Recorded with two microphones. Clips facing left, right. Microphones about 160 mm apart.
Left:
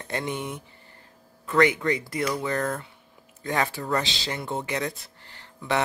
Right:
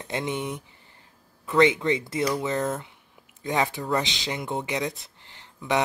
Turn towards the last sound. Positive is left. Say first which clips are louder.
# right 1 dB
turn(degrees=-15)  # may be behind; listen again after turning